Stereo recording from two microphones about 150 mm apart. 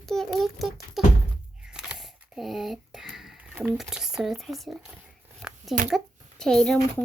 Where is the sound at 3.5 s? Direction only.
5° right (ahead or behind).